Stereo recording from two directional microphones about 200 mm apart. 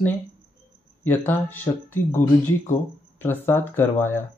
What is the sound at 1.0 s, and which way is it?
Speech, 10° left (ahead or behind).